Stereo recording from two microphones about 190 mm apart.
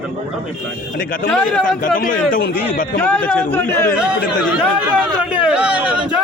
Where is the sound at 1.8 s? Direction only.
45° left (ahead or behind).